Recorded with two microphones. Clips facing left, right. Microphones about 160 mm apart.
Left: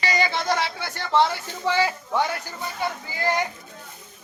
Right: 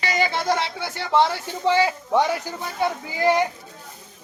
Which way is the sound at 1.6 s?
20° right (ahead or behind).